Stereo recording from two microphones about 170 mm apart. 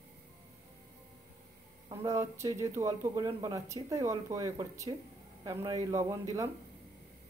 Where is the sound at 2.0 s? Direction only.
20° right (ahead or behind).